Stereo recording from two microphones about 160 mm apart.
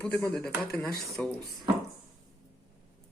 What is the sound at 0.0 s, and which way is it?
Speech, 10° left (ahead or behind).